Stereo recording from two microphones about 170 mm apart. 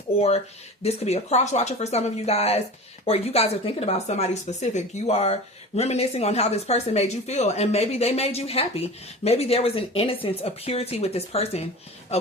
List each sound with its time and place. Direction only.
0.2 s speech: 35° left (ahead or behind)